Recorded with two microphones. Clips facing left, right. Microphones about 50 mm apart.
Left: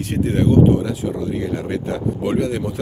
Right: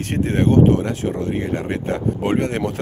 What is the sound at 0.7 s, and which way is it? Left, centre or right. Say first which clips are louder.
Speech: even; right.